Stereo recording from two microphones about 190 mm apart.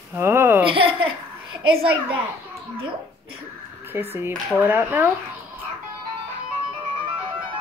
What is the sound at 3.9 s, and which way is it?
Speech, 10° right (ahead or behind).